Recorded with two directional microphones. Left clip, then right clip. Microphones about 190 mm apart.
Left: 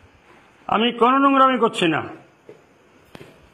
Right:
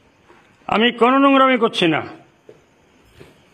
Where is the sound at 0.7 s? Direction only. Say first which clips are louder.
Right 2 dB; 35° right (ahead or behind).